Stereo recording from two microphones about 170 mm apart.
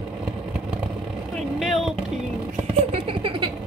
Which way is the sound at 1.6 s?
Centre (ahead or behind).